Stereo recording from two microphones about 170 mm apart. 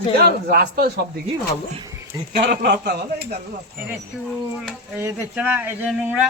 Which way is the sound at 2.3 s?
70° right (ahead or behind).